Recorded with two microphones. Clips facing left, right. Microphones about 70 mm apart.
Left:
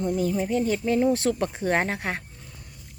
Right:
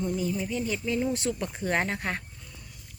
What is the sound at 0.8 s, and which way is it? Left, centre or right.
Speech, left.